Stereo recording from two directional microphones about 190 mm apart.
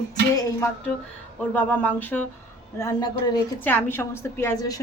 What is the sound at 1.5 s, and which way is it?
A woman's voice, 10° left (ahead or behind).